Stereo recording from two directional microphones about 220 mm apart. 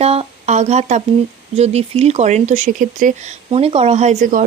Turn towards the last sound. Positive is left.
turn(degrees=-35)  # may be behind; listen again after turning